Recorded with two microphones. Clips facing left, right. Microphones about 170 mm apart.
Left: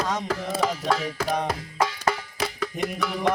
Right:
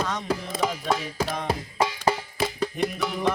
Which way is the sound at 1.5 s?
25° right (ahead or behind).